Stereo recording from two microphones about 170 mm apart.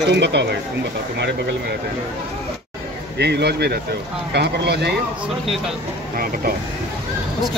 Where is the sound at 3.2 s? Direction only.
80° right.